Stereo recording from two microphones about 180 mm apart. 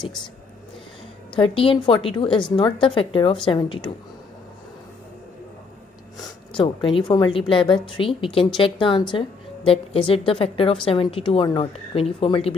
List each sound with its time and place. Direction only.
1.3 s a woman's voice: 30° left (ahead or behind)
6.5 s a woman's voice: 30° left (ahead or behind)